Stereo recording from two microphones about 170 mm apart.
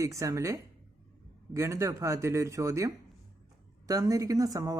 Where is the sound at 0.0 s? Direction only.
20° right (ahead or behind).